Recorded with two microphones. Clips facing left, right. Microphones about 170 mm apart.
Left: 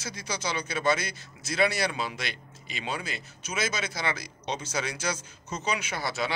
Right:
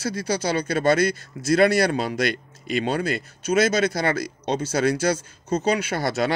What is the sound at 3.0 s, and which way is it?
Speech, 65° right (ahead or behind).